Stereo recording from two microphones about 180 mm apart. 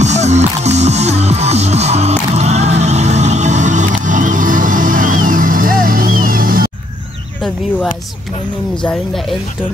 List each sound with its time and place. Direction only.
0.0 s music: 40° right (ahead or behind)
8.8 s speech: centre (ahead or behind)